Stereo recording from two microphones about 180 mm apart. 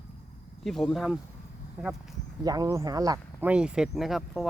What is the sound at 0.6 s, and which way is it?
Speech, centre (ahead or behind).